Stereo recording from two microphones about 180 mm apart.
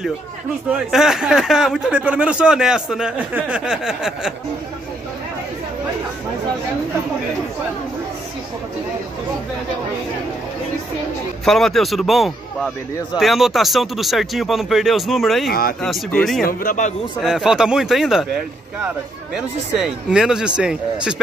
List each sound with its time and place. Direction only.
0.9 s speech: centre (ahead or behind)
11.4 s speech: centre (ahead or behind)
16.4 s speech: 45° left (ahead or behind)
17.2 s speech: centre (ahead or behind)
19.3 s speech: 5° right (ahead or behind)